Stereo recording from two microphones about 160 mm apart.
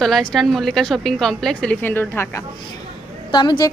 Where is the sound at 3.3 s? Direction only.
30° left (ahead or behind).